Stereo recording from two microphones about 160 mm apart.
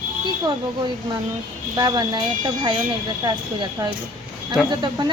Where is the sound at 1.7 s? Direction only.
25° right (ahead or behind).